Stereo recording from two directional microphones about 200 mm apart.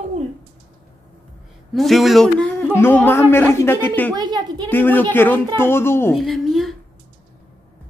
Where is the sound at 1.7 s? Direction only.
Centre (ahead or behind).